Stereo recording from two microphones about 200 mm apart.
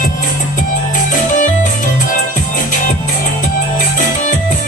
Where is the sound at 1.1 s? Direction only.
40° left (ahead or behind).